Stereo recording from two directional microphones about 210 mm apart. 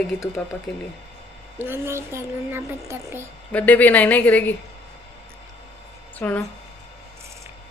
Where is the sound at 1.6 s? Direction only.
10° right (ahead or behind).